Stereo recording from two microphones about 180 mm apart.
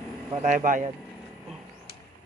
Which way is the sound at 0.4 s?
45° right (ahead or behind).